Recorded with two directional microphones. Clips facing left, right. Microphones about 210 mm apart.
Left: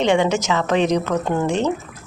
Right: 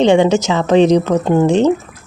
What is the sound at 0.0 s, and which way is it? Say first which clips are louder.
A woman's voice: right 7 dB; 30° right (ahead or behind).